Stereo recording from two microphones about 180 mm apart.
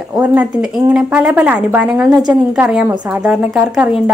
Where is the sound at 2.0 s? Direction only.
20° right (ahead or behind).